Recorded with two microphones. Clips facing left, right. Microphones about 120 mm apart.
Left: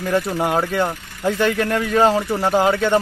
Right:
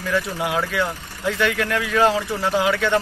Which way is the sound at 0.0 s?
40° left (ahead or behind).